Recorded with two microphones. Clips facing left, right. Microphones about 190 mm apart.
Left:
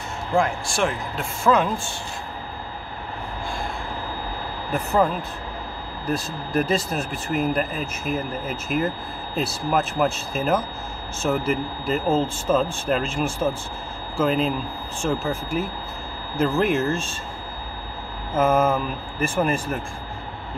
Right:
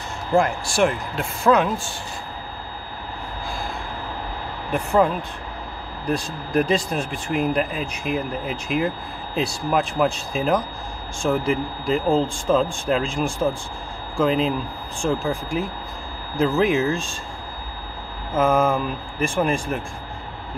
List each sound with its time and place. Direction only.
0.4 s speech: centre (ahead or behind)
6.1 s speech: centre (ahead or behind)
18.3 s speech: 5° left (ahead or behind)